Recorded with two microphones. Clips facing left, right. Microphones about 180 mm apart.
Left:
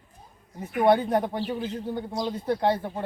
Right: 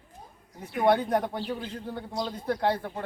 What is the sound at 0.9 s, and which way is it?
Speech, 10° left (ahead or behind).